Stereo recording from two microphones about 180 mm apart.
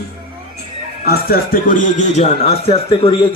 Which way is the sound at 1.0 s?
55° left (ahead or behind).